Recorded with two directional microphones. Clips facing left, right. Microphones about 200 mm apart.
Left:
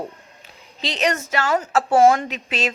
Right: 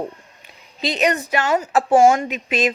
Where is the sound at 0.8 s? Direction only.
15° right (ahead or behind).